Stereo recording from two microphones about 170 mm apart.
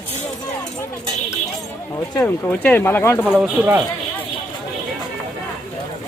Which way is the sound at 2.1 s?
10° left (ahead or behind).